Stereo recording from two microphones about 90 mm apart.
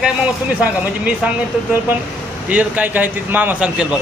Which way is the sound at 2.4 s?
15° right (ahead or behind).